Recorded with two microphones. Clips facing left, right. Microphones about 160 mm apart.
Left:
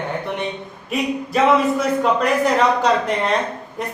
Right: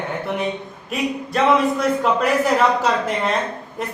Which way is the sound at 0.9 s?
Centre (ahead or behind).